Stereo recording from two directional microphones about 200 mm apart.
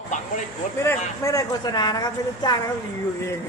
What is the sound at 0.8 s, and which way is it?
A woman's voice, 15° left (ahead or behind).